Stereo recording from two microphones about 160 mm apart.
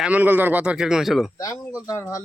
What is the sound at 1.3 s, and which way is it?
Speech, 20° left (ahead or behind).